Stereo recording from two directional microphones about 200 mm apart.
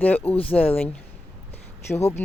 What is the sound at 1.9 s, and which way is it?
Speech, 15° left (ahead or behind).